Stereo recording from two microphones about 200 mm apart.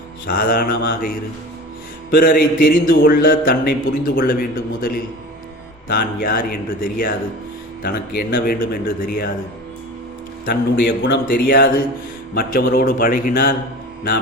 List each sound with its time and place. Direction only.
0.3 s mantra: 45° left (ahead or behind)
10.4 s mantra: 55° left (ahead or behind)